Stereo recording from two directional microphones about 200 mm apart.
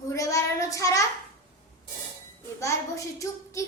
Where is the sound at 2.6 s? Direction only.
15° left (ahead or behind).